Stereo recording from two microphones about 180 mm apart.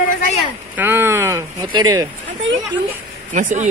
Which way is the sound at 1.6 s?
25° right (ahead or behind).